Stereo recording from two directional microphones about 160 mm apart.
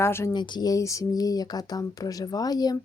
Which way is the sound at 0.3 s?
30° left (ahead or behind).